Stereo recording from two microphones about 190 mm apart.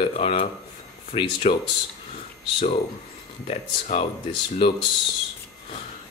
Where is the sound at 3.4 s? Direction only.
30° left (ahead or behind).